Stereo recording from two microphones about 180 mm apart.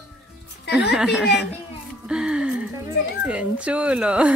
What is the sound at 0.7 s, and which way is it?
Speech, 5° right (ahead or behind).